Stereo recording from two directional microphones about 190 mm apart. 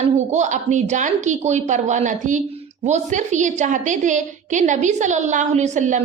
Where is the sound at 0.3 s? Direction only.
40° right (ahead or behind).